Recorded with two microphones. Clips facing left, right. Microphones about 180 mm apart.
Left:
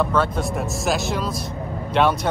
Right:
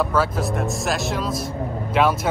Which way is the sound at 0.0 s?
5° right (ahead or behind).